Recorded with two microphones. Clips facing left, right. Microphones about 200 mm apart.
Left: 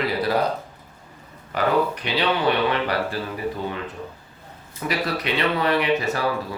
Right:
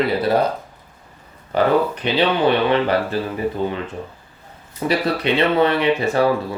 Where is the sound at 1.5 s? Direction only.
30° right (ahead or behind).